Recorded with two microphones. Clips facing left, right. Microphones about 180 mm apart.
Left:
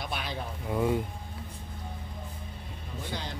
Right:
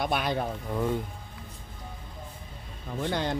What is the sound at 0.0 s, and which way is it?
Speech, 55° right (ahead or behind).